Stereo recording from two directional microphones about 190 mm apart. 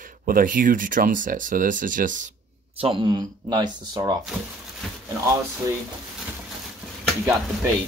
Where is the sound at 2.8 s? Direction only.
25° right (ahead or behind).